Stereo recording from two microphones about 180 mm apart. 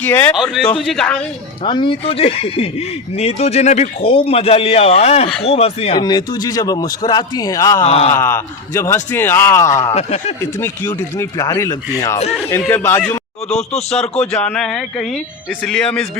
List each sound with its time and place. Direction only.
0.0 s speech: 10° left (ahead or behind)
0.3 s speech: centre (ahead or behind)
1.6 s speech: 25° left (ahead or behind)
6.0 s a man's voice: 20° left (ahead or behind)
7.9 s speech: 35° left (ahead or behind)
8.1 s speech: 15° left (ahead or behind)
9.9 s speech: 35° left (ahead or behind)
10.4 s speech: 15° left (ahead or behind)
13.5 s speech: 40° left (ahead or behind)
13.9 s speech: 5° left (ahead or behind)